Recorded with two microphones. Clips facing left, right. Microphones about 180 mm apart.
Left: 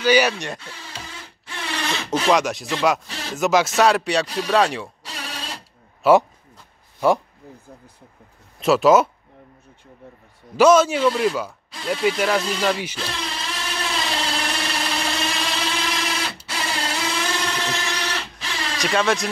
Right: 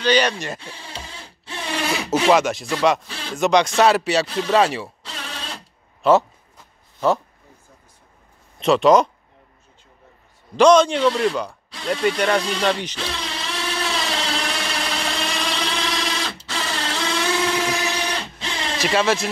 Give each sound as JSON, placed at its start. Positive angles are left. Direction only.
{"t": 0.0, "sound": "speech", "side_deg": 10}
{"t": 1.4, "sound": "speech", "side_deg": -20}
{"t": 5.0, "sound": "a sound", "side_deg": 10}
{"t": 6.0, "sound": "speech", "side_deg": 5}
{"t": 8.5, "sound": "speech", "side_deg": 5}
{"t": 10.5, "sound": "a sound", "side_deg": 5}
{"t": 17.8, "sound": "printer", "side_deg": -20}
{"t": 18.8, "sound": "speech", "side_deg": 0}